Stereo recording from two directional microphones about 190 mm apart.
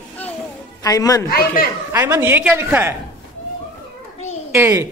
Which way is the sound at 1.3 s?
50° left (ahead or behind).